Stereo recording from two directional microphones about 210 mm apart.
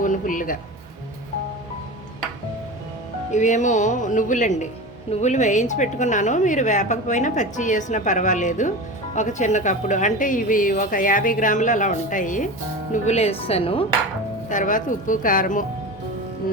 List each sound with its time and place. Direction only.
0.0 s speech: 40° left (ahead or behind)
3.3 s a woman's voice: 35° left (ahead or behind)
14.5 s a woman's voice: 40° left (ahead or behind)